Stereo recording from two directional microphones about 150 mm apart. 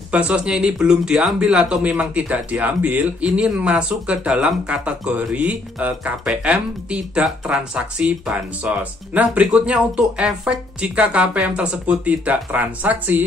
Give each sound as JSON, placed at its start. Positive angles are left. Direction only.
{"t": 0.1, "sound": "speech", "side_deg": -10}